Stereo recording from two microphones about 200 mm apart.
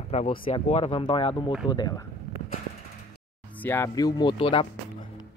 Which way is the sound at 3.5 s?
10° left (ahead or behind).